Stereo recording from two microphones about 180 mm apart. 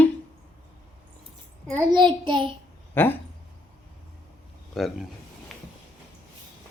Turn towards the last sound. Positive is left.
turn(degrees=0)  # may be behind; listen again after turning